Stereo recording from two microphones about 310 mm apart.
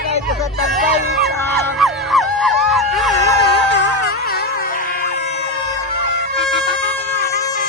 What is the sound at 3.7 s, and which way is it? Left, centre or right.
Music, left.